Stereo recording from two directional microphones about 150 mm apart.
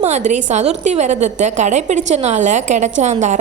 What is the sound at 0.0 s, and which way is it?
A woman's voice, 50° right (ahead or behind).